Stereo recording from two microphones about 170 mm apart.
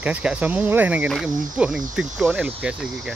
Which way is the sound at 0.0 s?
5° right (ahead or behind).